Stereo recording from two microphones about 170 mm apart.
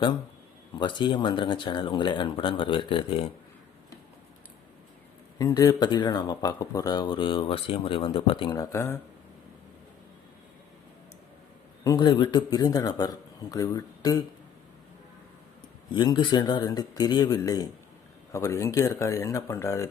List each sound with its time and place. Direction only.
0.8 s speech: 25° left (ahead or behind)
5.4 s speech: 20° left (ahead or behind)
11.8 s speech: 20° left (ahead or behind)
15.9 s speech: 25° left (ahead or behind)